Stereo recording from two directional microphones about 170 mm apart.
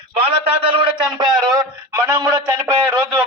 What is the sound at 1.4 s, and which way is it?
A man's voice, 20° right (ahead or behind).